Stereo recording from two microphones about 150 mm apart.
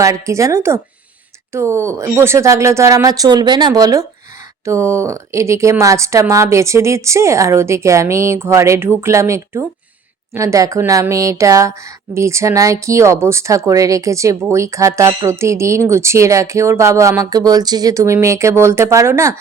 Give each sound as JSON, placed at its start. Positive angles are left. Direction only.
{"t": 0.0, "sound": "speech", "side_deg": -20}